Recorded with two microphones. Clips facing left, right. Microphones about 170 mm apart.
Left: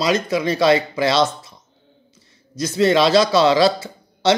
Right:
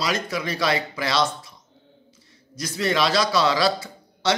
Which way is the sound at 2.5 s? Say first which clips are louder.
Left 8 dB; 25° left (ahead or behind).